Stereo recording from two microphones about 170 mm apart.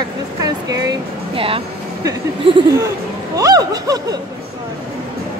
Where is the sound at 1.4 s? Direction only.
30° right (ahead or behind).